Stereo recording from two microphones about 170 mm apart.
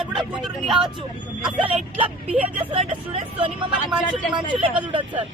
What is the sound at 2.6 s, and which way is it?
Speech, 30° right (ahead or behind).